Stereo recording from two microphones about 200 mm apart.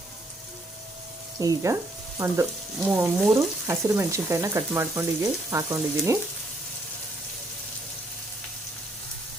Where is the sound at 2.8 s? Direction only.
5° right (ahead or behind).